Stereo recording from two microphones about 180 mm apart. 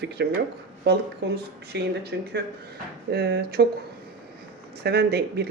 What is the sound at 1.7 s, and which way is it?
Speech, 70° right (ahead or behind).